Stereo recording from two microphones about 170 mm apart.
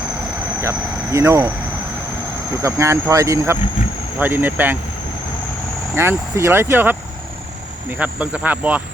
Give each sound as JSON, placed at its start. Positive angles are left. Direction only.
{"t": 0.6, "sound": "speech", "side_deg": -15}
{"t": 2.6, "sound": "speech", "side_deg": -15}
{"t": 5.9, "sound": "speech", "side_deg": -15}